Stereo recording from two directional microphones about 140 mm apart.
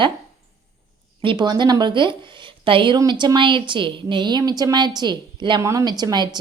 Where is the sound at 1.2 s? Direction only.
35° right (ahead or behind).